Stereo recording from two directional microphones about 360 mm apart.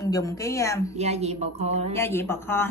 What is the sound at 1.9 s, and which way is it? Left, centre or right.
Speech, centre.